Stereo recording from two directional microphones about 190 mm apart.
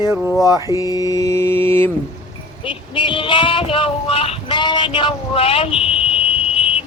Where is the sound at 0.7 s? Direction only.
20° left (ahead or behind).